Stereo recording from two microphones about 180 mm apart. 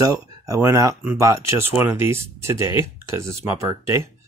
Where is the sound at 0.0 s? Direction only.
20° right (ahead or behind).